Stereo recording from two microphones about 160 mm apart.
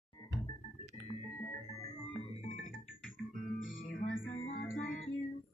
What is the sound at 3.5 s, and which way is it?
Music, 55° left (ahead or behind).